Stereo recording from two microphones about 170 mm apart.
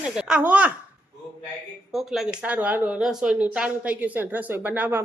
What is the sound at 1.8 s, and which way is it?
Speech, centre (ahead or behind).